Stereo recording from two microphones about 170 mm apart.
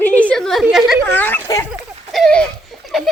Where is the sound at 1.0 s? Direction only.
10° left (ahead or behind).